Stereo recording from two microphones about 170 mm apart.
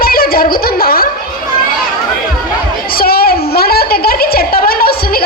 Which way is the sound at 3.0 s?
65° left (ahead or behind).